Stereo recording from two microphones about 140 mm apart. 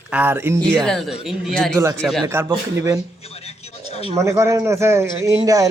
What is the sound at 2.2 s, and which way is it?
Speech, 20° right (ahead or behind).